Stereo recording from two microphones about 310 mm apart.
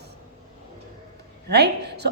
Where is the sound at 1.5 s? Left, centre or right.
Right.